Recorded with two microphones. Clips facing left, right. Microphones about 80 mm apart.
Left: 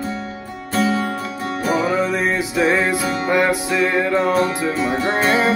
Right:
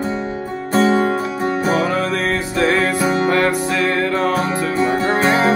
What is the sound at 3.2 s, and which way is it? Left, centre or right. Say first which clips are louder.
Music: right 1 dB; centre.